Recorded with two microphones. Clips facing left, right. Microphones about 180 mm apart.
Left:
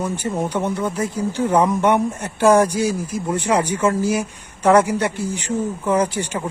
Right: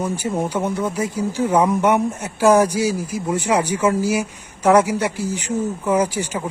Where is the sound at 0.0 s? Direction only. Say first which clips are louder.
Right 1 dB; 10° right (ahead or behind).